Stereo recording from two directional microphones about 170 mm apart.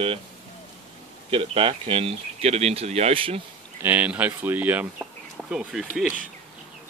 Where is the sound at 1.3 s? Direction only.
35° right (ahead or behind).